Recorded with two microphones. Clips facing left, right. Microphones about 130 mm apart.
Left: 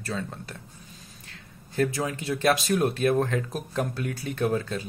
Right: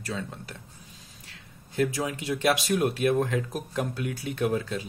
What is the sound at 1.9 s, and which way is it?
Speech, 15° right (ahead or behind).